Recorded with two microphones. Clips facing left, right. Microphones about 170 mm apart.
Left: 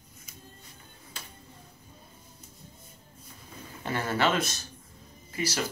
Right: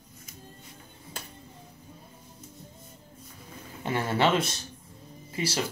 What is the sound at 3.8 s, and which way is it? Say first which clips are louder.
Speech: right 2 dB; 25° right (ahead or behind).